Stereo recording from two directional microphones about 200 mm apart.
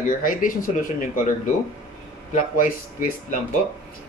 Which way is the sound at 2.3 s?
40° left (ahead or behind).